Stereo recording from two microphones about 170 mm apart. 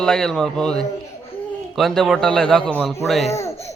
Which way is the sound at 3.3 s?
15° left (ahead or behind).